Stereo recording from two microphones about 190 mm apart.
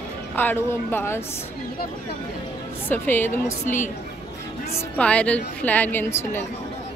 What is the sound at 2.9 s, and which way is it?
A woman's voice, 10° left (ahead or behind).